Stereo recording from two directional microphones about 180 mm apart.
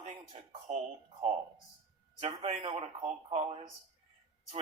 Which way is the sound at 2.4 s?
30° right (ahead or behind).